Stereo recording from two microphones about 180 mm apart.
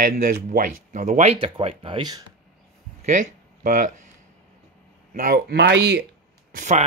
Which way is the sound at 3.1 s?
45° right (ahead or behind).